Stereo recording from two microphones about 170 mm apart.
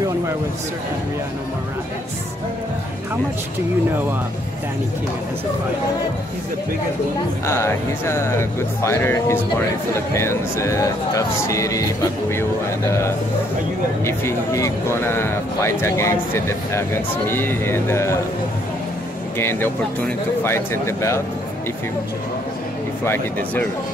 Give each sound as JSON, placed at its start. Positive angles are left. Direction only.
{"t": 7.4, "sound": "speech", "side_deg": 15}
{"t": 14.0, "sound": "speech", "side_deg": 15}
{"t": 19.3, "sound": "speech", "side_deg": 15}
{"t": 23.0, "sound": "speech", "side_deg": 15}